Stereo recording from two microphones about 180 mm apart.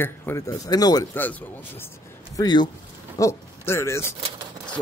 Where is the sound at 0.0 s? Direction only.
15° left (ahead or behind).